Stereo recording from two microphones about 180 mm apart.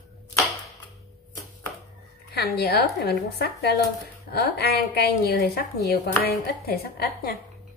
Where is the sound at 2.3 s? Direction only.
65° left (ahead or behind).